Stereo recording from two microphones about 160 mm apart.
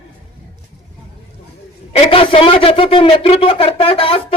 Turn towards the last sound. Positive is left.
turn(degrees=35)  # may be behind; listen again after turning